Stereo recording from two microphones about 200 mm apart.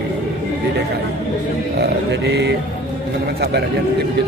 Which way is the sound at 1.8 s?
55° right (ahead or behind).